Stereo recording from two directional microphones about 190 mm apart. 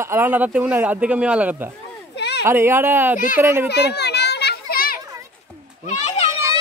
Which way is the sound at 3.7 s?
60° left (ahead or behind).